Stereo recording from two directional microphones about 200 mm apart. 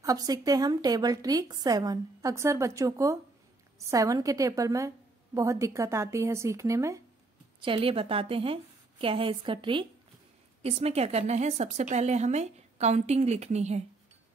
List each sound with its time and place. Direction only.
0.0 s a woman's voice: 20° right (ahead or behind)
7.6 s a woman's voice: 25° right (ahead or behind)